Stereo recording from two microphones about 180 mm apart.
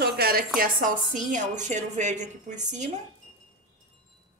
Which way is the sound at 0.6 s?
45° right (ahead or behind).